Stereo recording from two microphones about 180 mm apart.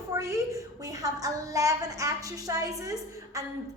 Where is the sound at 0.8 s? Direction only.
20° right (ahead or behind).